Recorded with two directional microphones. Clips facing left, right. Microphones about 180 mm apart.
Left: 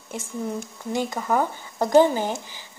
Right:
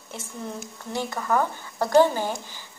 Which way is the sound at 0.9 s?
15° left (ahead or behind).